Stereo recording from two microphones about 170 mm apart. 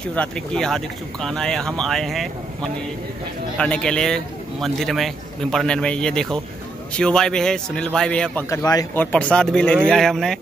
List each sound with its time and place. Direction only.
0.1 s a man's voice: 5° left (ahead or behind)
8.5 s speech: 20° left (ahead or behind)
8.9 s a man's voice: 10° left (ahead or behind)